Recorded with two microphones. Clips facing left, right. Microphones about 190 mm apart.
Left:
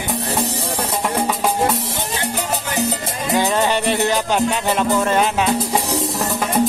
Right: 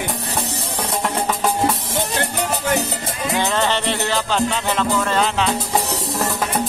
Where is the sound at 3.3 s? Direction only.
10° left (ahead or behind).